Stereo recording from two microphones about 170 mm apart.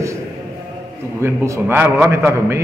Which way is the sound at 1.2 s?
10° right (ahead or behind).